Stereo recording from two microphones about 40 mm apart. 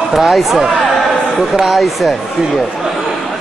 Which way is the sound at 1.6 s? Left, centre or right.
Centre.